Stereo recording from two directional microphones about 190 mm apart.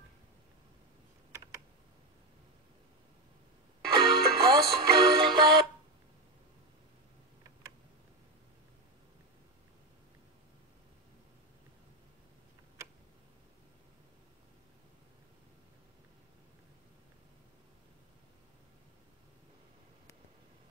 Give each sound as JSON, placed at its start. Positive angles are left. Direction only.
{"t": 3.9, "sound": "music", "side_deg": -25}